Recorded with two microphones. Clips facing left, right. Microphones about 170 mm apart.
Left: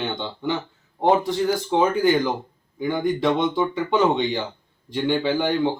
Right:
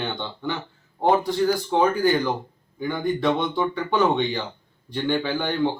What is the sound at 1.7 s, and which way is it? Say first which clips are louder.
A man's voice: left 2 dB; 15° left (ahead or behind).